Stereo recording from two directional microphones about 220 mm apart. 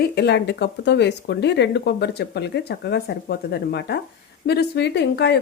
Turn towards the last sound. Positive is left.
turn(degrees=50)  # may be behind; listen again after turning